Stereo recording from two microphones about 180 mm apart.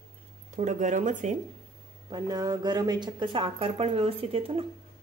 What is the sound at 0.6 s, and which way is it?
Speech, 40° right (ahead or behind).